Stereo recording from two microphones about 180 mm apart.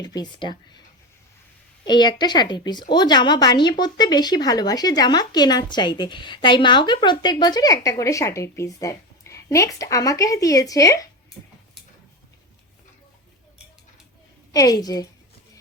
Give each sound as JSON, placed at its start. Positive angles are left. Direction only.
{"t": 0.0, "sound": "speech", "side_deg": 25}
{"t": 1.8, "sound": "speech", "side_deg": 25}
{"t": 14.5, "sound": "speech", "side_deg": 20}